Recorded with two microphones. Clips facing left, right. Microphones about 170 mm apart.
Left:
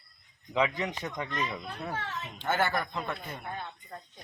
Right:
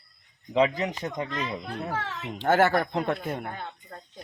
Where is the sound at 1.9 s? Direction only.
90° right.